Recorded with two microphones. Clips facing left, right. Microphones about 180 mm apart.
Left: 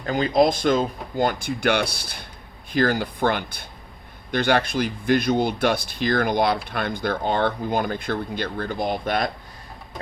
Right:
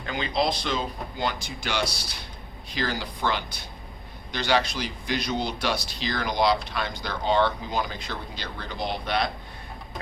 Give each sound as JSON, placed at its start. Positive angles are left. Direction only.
{"t": 0.0, "sound": "speech", "side_deg": 45}